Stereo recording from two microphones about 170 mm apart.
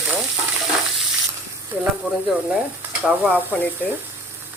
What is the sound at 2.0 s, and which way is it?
A woman's voice, 5° right (ahead or behind).